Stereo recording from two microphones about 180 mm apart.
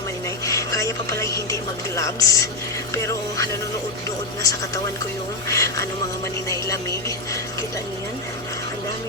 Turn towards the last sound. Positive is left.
turn(degrees=20)  # may be behind; listen again after turning